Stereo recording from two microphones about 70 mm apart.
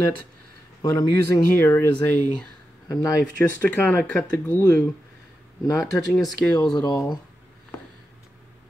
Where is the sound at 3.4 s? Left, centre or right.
Left.